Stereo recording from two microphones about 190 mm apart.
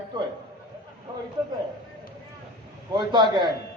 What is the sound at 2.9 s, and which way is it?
Speech, 25° right (ahead or behind).